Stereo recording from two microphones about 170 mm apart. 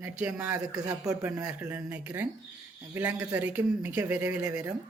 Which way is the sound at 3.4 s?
10° right (ahead or behind).